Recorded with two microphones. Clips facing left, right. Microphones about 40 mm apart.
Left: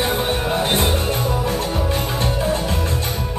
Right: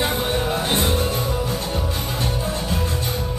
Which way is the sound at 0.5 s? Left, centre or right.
Left.